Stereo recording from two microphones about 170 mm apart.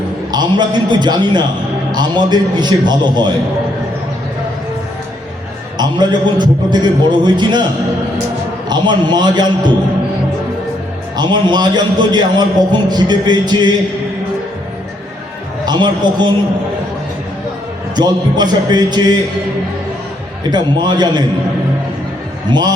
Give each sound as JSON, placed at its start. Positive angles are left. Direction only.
{"t": 0.3, "sound": "a man's voice", "side_deg": -25}
{"t": 5.7, "sound": "a man's voice", "side_deg": -25}
{"t": 8.7, "sound": "a man's voice", "side_deg": -25}
{"t": 11.2, "sound": "a man's voice", "side_deg": -25}
{"t": 15.6, "sound": "a man's voice", "side_deg": -25}
{"t": 17.9, "sound": "a man's voice", "side_deg": -25}
{"t": 20.5, "sound": "a man's voice", "side_deg": -25}
{"t": 22.5, "sound": "a man's voice", "side_deg": -25}